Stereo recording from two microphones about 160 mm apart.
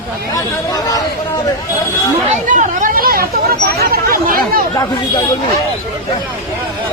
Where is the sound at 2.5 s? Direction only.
55° right (ahead or behind).